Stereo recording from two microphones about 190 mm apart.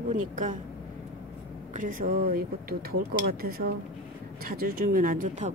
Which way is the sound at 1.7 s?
45° right (ahead or behind).